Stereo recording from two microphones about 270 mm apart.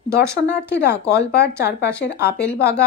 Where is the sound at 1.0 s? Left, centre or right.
Left.